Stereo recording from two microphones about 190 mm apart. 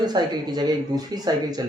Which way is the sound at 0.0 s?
20° right (ahead or behind).